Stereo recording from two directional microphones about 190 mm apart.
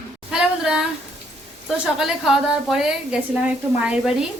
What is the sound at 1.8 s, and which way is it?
Speech, centre (ahead or behind).